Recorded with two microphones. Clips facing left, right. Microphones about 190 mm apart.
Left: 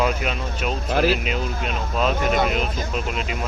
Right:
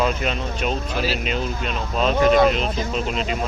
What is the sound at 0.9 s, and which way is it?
Speech, 55° left (ahead or behind).